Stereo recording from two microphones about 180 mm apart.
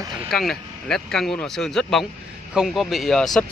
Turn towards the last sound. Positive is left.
turn(degrees=0)  # may be behind; listen again after turning